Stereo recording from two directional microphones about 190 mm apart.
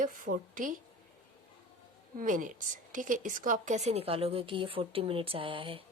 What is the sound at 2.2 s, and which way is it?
A woman's voice, 45° right (ahead or behind).